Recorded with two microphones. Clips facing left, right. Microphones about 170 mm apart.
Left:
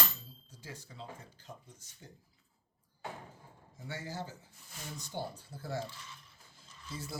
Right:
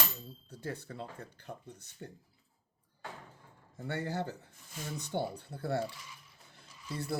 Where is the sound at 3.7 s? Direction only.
60° right (ahead or behind).